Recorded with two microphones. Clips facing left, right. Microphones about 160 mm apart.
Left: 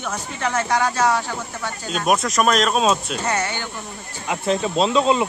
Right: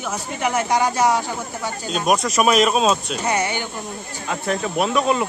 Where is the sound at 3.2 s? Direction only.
15° right (ahead or behind).